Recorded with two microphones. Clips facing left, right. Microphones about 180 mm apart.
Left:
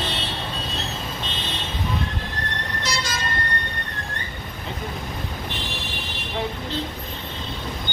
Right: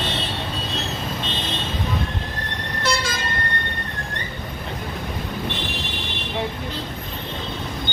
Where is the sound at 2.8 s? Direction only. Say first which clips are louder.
Right 6 dB; 60° right (ahead or behind).